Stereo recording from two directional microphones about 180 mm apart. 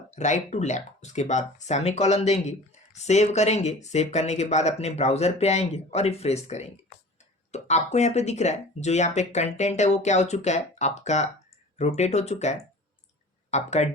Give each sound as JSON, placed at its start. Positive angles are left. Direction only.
{"t": 0.2, "sound": "speech", "side_deg": 40}